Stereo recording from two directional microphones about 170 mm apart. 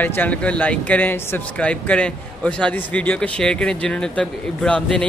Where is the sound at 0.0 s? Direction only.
10° left (ahead or behind).